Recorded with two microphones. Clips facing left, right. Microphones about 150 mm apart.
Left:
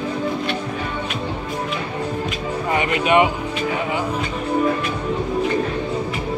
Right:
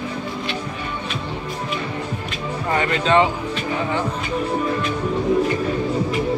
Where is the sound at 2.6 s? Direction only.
15° left (ahead or behind).